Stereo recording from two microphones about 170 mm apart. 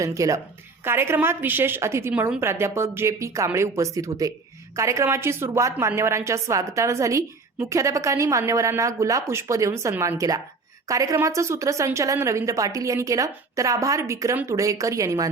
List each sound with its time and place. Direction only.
0.0 s a woman's voice: 20° right (ahead or behind)